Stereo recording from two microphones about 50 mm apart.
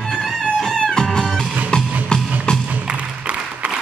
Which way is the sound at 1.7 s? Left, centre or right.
Centre.